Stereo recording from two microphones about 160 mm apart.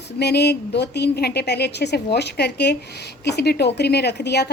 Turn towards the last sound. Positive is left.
turn(degrees=90)